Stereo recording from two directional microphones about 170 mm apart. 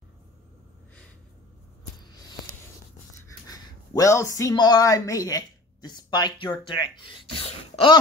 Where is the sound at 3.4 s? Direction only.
20° left (ahead or behind).